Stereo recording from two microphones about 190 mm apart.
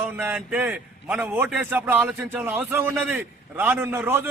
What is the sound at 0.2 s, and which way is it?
A man's voice, 10° right (ahead or behind).